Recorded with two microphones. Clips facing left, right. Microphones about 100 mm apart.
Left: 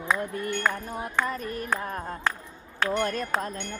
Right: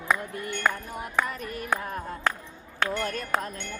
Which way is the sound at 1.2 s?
35° left (ahead or behind).